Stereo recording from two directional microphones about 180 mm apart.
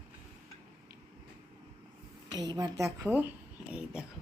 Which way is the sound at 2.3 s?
20° right (ahead or behind).